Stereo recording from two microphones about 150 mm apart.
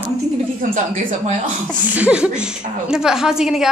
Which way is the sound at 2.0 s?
5° right (ahead or behind).